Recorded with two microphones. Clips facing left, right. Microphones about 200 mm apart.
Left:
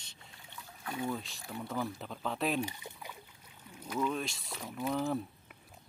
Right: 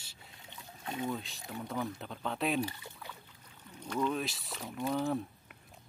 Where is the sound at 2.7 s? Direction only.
15° left (ahead or behind).